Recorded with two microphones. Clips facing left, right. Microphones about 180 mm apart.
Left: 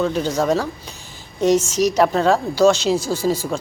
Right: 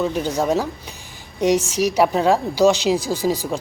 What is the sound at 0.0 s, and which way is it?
A woman's voice, 10° right (ahead or behind).